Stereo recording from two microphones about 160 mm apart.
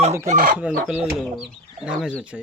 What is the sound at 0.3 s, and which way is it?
Speech, 55° right (ahead or behind).